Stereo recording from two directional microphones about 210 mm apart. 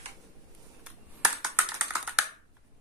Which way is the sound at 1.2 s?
5° right (ahead or behind).